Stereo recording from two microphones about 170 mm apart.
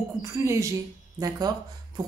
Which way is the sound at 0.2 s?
15° right (ahead or behind).